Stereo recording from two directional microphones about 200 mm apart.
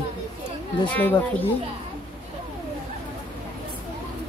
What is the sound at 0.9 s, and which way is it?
Speech, 10° left (ahead or behind).